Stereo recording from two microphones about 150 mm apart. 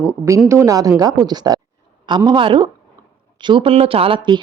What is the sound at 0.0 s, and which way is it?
Speech, 15° right (ahead or behind).